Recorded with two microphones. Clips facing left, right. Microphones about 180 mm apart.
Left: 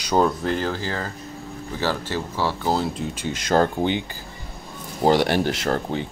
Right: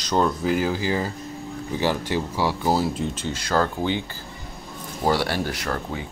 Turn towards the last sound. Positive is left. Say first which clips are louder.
# left 5 dB
turn(degrees=30)  # may be behind; listen again after turning